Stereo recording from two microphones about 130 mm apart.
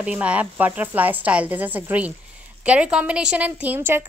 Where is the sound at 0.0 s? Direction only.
10° right (ahead or behind).